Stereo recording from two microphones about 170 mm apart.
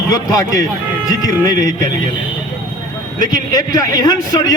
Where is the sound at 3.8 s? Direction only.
20° left (ahead or behind).